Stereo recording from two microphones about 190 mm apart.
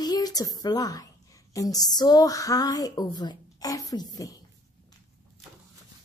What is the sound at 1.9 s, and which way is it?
A woman's voice, 20° left (ahead or behind).